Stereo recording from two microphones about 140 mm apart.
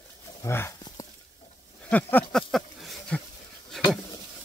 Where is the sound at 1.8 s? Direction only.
10° left (ahead or behind).